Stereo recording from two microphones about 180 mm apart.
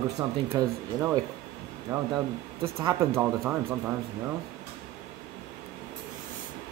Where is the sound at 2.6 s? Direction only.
25° right (ahead or behind).